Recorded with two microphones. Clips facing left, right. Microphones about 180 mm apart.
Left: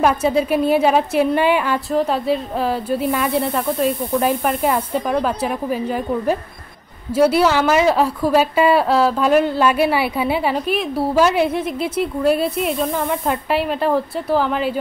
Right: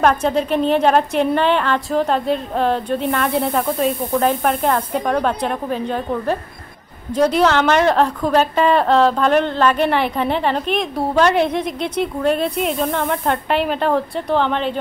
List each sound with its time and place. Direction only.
0.0 s a woman's voice: 5° left (ahead or behind)